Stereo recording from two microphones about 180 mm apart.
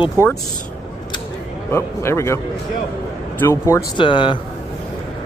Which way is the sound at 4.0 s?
25° left (ahead or behind).